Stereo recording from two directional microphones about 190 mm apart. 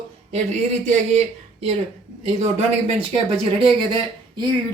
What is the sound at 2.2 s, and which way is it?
A man's voice, 35° right (ahead or behind).